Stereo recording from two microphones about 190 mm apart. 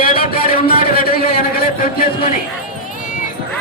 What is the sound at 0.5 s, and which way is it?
A man's voice, 55° left (ahead or behind).